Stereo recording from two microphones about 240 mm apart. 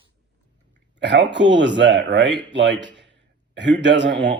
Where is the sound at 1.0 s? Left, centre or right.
Right.